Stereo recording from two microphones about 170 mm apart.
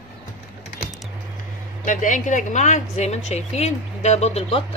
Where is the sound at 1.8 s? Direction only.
50° left (ahead or behind).